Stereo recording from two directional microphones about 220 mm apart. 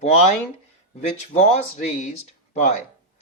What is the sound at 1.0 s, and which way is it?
Speech, 30° left (ahead or behind).